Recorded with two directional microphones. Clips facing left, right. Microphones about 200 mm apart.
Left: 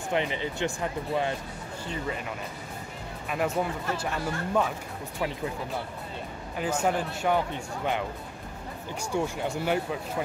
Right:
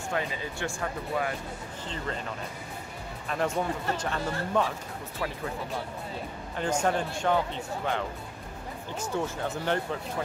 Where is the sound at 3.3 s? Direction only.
5° left (ahead or behind).